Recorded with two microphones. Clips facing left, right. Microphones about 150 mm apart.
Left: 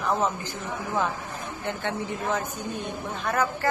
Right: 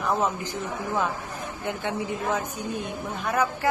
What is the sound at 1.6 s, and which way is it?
Speech, 10° right (ahead or behind).